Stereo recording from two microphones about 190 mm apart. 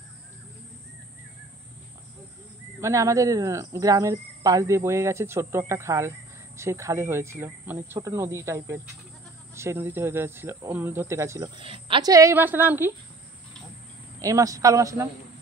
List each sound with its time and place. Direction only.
2.8 s speech: 15° right (ahead or behind)
14.2 s speech: 15° right (ahead or behind)